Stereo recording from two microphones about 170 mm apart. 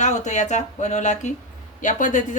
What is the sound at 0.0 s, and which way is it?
Speech, 45° left (ahead or behind).